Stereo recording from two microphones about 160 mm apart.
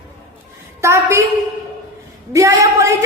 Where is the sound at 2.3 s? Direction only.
20° right (ahead or behind).